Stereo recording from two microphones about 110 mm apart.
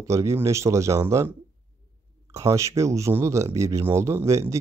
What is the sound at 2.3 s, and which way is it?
Speech, 30° right (ahead or behind).